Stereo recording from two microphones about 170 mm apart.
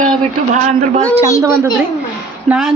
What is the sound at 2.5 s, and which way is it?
Speech, 5° right (ahead or behind).